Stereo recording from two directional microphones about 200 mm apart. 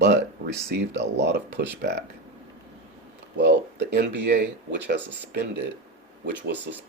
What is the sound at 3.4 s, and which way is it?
Speech, 60° right (ahead or behind).